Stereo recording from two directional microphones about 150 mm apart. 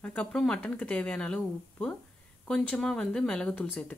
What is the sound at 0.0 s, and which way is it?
Speech, 10° left (ahead or behind).